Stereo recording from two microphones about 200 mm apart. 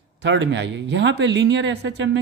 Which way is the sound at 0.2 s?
60° right (ahead or behind).